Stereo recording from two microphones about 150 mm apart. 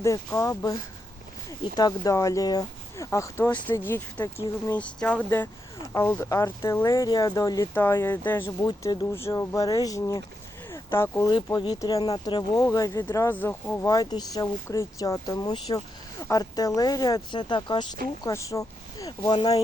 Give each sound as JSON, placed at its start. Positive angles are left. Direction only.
{"t": 0.0, "sound": "speech", "side_deg": 20}
{"t": 8.6, "sound": "speech", "side_deg": 30}
{"t": 9.1, "sound": "speech", "side_deg": 15}
{"t": 10.7, "sound": "a sound", "side_deg": 15}
{"t": 11.4, "sound": "speech", "side_deg": 25}
{"t": 13.8, "sound": "speech", "side_deg": 25}
{"t": 18.2, "sound": "speech", "side_deg": 20}